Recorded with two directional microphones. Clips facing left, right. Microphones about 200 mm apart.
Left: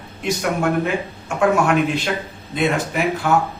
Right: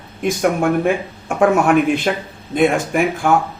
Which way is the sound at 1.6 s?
50° right (ahead or behind).